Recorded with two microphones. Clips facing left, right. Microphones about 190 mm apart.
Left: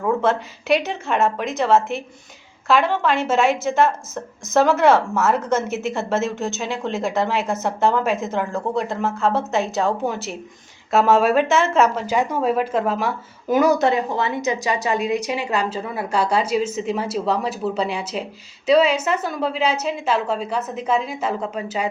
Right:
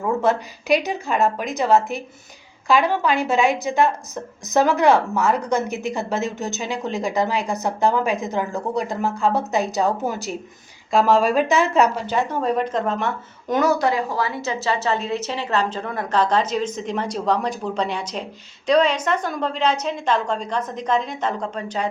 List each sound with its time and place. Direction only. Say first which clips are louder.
0.0 s a sound: even; centre (ahead or behind)
0.7 s a woman's voice: even; centre (ahead or behind)
13.7 s a woman's voice: left 2 dB; 25° left (ahead or behind); by 21.8 s 5° left (ahead or behind)